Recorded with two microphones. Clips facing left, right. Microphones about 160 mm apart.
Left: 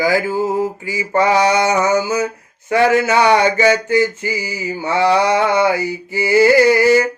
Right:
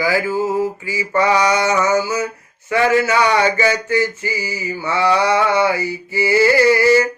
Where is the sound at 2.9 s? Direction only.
25° left (ahead or behind).